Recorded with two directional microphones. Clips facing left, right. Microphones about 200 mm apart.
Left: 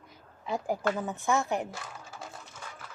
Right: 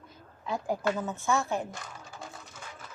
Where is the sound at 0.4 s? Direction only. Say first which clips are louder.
Even; 15° left (ahead or behind).